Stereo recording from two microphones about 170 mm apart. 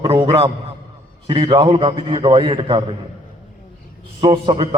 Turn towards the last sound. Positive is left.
turn(degrees=-30)  # may be behind; listen again after turning